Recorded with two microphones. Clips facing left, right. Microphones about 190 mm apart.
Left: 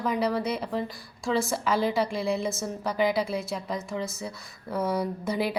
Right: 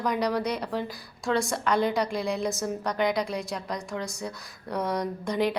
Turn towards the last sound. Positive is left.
turn(degrees=5)  # may be behind; listen again after turning